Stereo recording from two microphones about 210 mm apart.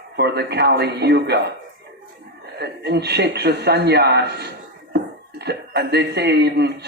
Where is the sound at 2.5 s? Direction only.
50° right (ahead or behind).